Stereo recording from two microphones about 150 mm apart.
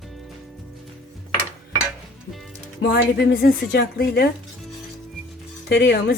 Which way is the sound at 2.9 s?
90° left.